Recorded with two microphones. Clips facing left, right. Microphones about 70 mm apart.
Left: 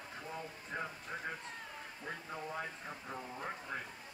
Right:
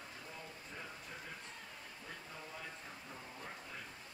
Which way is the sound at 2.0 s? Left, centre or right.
Left.